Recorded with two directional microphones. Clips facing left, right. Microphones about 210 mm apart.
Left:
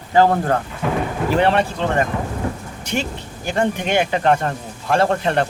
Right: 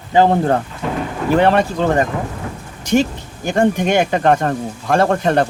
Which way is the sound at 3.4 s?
45° right (ahead or behind).